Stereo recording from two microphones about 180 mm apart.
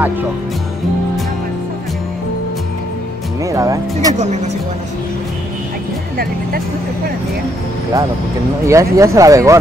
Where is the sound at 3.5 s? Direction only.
20° right (ahead or behind).